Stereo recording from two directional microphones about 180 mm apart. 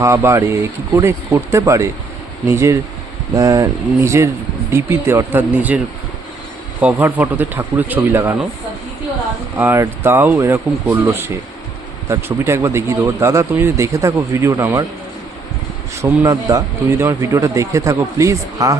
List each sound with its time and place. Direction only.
0.0 s a man's voice: 15° right (ahead or behind)
9.6 s a man's voice: 10° right (ahead or behind)
16.0 s a man's voice: 20° right (ahead or behind)